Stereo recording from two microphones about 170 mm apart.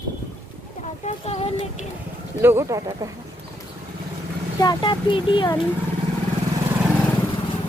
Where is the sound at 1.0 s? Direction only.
35° left (ahead or behind).